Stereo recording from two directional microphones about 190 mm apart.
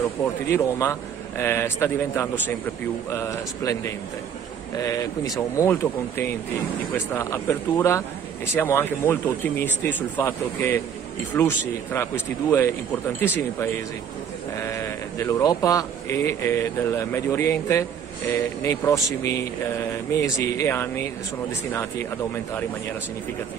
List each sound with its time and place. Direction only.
0.2 s speech: 10° left (ahead or behind)
14.7 s speech: 15° left (ahead or behind)